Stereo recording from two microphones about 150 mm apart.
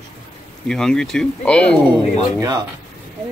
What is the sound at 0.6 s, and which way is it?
Speech, 5° left (ahead or behind).